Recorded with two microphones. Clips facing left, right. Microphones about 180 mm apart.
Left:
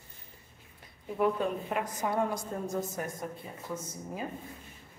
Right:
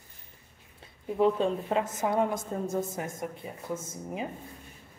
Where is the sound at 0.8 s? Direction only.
25° right (ahead or behind).